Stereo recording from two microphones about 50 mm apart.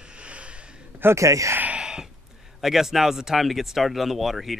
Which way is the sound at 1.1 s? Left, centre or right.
Right.